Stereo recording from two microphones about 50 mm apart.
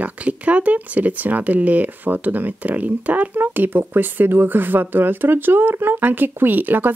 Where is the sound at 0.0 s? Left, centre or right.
Right.